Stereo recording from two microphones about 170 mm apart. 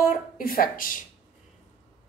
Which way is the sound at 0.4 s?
60° left (ahead or behind).